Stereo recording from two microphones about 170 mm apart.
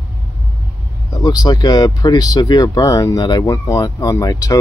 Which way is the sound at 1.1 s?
25° left (ahead or behind).